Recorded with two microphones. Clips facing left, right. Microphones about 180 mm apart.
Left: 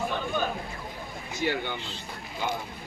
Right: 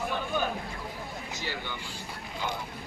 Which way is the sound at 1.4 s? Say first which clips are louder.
Left 11 dB; 55° left (ahead or behind).